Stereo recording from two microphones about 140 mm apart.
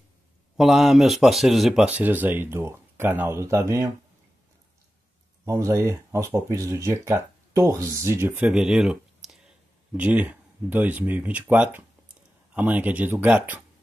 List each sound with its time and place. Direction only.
0.6 s speech: centre (ahead or behind); by 3.9 s 20° right (ahead or behind)
5.4 s speech: 20° right (ahead or behind)
8.5 s a sound: 5° right (ahead or behind)
9.9 s speech: 10° right (ahead or behind)